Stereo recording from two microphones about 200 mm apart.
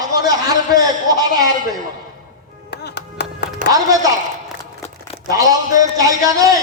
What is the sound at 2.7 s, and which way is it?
Music, 55° left (ahead or behind).